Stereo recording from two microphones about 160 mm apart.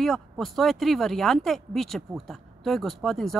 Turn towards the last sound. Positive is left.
turn(degrees=0)  # may be behind; listen again after turning